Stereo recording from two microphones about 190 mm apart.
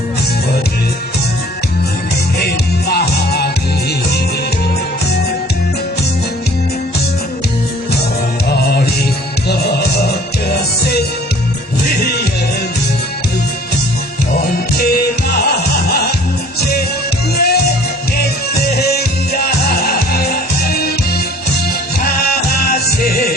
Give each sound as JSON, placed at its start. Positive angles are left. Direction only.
{"t": 2.9, "sound": "music", "side_deg": 55}
{"t": 10.5, "sound": "music", "side_deg": 55}
{"t": 14.8, "sound": "music", "side_deg": 55}
{"t": 18.8, "sound": "music", "side_deg": 55}
{"t": 22.0, "sound": "music", "side_deg": 55}